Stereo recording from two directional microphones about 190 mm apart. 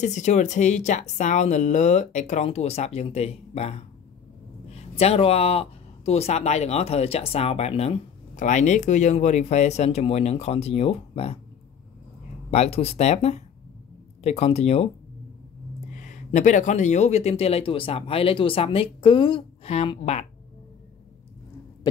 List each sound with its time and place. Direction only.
0.0 s speech: 40° left (ahead or behind)
12.4 s speech: 30° left (ahead or behind)
15.9 s speech: 40° left (ahead or behind)